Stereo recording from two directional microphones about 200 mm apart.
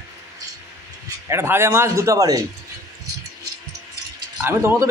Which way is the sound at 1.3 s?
10° right (ahead or behind).